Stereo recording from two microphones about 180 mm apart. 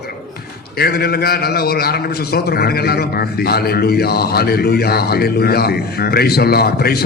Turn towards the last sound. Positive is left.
turn(degrees=60)  # may be behind; listen again after turning